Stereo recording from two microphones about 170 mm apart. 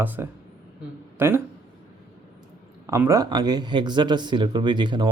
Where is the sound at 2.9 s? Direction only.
15° right (ahead or behind).